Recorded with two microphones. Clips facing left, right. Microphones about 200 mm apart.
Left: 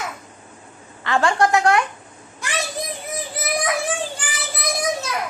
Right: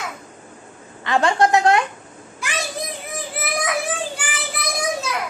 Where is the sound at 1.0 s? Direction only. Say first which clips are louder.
Right 1 dB; 20° right (ahead or behind).